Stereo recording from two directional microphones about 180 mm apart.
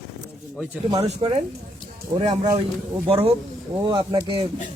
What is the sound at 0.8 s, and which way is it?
Speech, 30° right (ahead or behind).